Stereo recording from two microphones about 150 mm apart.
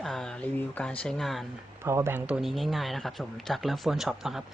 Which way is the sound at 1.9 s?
15° right (ahead or behind).